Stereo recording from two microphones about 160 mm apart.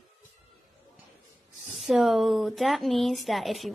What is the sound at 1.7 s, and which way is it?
Speech, centre (ahead or behind).